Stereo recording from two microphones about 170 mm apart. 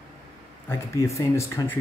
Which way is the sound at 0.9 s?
20° left (ahead or behind).